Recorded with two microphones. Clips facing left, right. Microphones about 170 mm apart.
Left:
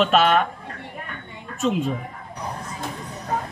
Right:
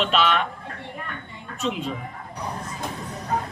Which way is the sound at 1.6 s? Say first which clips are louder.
Left 5 dB; 45° left (ahead or behind).